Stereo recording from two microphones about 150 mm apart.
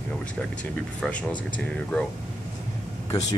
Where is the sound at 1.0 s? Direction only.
10° left (ahead or behind).